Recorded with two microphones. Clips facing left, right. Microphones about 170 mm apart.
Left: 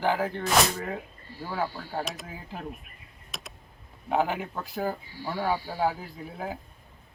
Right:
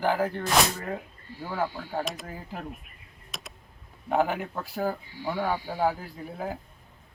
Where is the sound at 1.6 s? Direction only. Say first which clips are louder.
Right 4 dB; 15° right (ahead or behind).